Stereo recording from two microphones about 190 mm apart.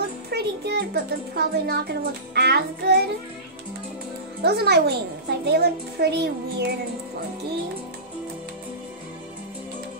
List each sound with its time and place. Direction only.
0.3 s a child's voice: 60° right (ahead or behind)
4.4 s a child's voice: 60° right (ahead or behind)